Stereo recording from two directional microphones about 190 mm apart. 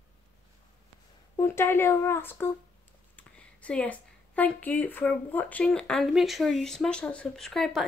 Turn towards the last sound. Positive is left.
turn(degrees=0)  # may be behind; listen again after turning